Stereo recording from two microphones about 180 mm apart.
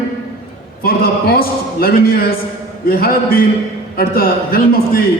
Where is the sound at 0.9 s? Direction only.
55° left (ahead or behind).